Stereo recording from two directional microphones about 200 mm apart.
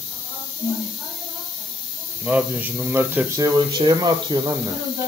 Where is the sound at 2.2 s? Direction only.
5° right (ahead or behind).